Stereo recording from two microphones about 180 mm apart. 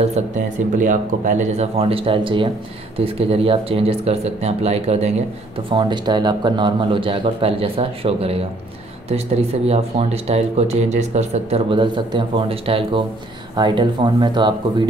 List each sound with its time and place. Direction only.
0.0 s speech: 40° right (ahead or behind)
5.7 s a man's voice: 25° right (ahead or behind)